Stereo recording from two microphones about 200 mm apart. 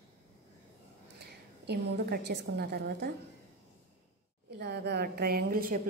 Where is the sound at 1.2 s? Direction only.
55° right (ahead or behind).